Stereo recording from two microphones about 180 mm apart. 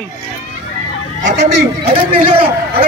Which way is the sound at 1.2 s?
75° right (ahead or behind).